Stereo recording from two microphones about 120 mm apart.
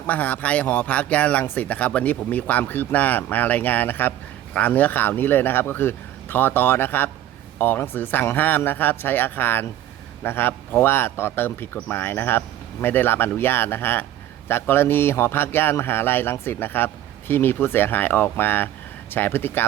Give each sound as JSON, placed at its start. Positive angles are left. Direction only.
{"t": 0.1, "sound": "a man's voice", "side_deg": 15}